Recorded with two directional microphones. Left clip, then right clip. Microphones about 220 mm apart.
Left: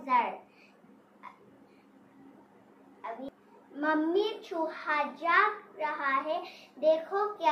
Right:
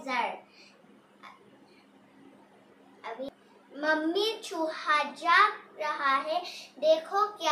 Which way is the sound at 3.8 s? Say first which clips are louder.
Right 1 dB; 15° right (ahead or behind).